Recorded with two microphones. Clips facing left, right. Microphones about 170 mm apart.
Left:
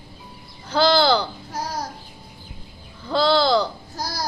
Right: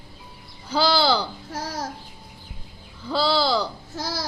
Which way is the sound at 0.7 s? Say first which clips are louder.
Left 3 dB; 10° right (ahead or behind).